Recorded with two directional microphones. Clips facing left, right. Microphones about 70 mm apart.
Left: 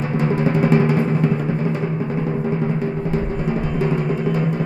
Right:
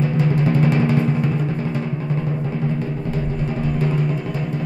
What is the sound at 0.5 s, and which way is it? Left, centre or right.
Music, centre.